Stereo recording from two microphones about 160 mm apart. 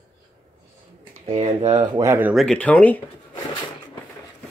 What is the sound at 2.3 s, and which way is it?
Speech, 5° left (ahead or behind).